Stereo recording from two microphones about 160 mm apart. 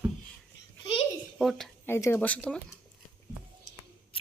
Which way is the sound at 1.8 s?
15° left (ahead or behind).